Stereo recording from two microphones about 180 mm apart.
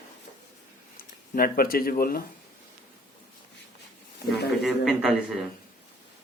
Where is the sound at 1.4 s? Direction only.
55° left (ahead or behind).